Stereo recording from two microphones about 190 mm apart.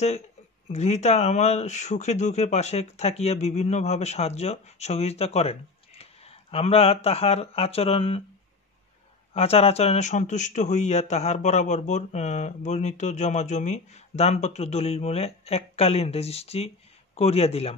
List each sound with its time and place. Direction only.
0.7 s speech: 35° left (ahead or behind)
9.3 s speech: 30° left (ahead or behind)